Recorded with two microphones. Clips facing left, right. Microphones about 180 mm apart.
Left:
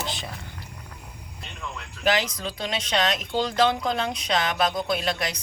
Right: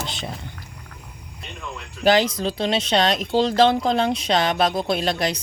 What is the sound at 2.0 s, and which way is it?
Speech, 30° right (ahead or behind).